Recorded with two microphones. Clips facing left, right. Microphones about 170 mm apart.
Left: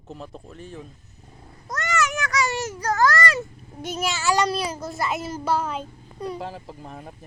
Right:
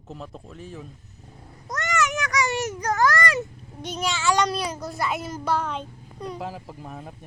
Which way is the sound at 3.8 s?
5° left (ahead or behind).